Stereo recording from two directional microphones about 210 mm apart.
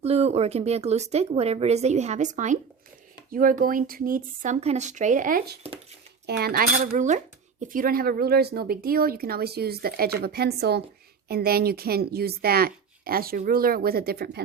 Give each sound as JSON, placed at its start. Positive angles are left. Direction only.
{"t": 0.0, "sound": "speech", "side_deg": -30}